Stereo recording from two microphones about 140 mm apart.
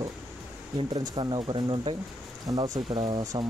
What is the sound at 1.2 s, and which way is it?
Speech, 35° right (ahead or behind).